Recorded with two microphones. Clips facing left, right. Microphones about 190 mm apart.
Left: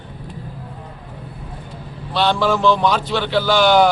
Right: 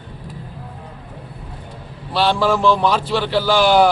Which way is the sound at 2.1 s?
5° right (ahead or behind).